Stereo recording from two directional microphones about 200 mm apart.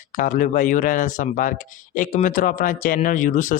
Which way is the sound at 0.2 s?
40° left (ahead or behind).